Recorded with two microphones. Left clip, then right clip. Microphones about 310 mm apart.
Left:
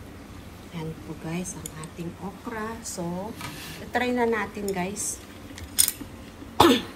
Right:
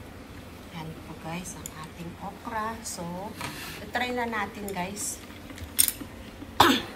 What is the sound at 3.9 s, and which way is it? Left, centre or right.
Speech, centre.